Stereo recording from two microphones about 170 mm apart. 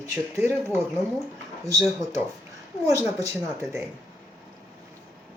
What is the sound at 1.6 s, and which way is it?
Speech, 20° right (ahead or behind).